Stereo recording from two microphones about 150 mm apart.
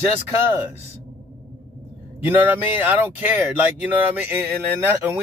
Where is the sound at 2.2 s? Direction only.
15° right (ahead or behind).